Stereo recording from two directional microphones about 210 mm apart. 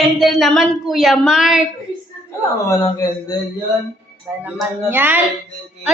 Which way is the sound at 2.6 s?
15° left (ahead or behind).